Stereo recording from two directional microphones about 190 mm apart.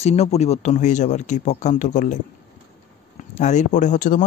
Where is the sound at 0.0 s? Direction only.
35° left (ahead or behind).